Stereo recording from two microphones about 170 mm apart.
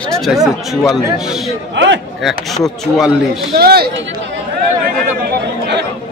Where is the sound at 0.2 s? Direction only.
Centre (ahead or behind).